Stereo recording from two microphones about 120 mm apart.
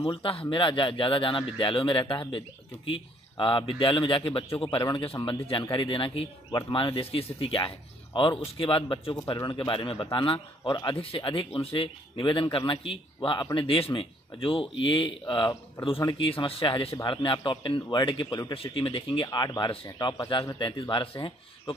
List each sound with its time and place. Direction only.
0.2 s speech: 50° left (ahead or behind)
9.7 s speech: 45° left (ahead or behind)
11.0 s speech: 45° left (ahead or behind); by 18.5 s 30° left (ahead or behind)
18.5 s speech: 50° left (ahead or behind)
19.2 s speech: 30° left (ahead or behind); by 21.7 s 50° left (ahead or behind)